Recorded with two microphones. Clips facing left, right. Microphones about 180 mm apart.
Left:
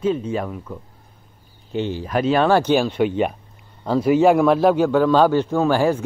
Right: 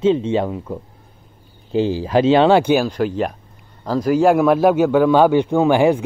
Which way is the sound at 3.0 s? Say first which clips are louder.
Left 1 dB; 5° left (ahead or behind).